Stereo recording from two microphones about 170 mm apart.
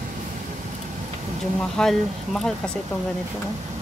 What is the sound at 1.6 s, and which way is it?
Speech, 5° left (ahead or behind).